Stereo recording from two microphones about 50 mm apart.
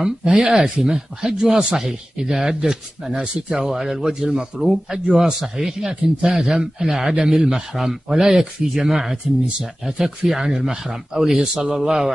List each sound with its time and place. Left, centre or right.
0.0 s speech: centre